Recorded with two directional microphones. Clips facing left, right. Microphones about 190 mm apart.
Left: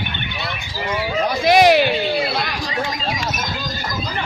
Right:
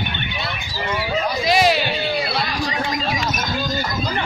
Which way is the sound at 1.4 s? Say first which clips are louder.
Left 5 dB; 60° left (ahead or behind).